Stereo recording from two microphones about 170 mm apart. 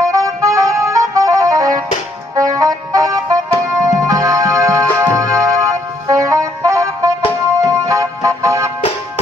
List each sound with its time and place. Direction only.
0.0 s music: 20° right (ahead or behind)